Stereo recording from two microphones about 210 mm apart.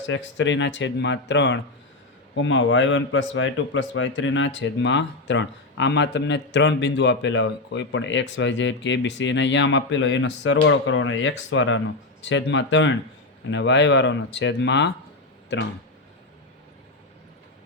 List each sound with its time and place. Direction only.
0.1 s speech: 60° left (ahead or behind)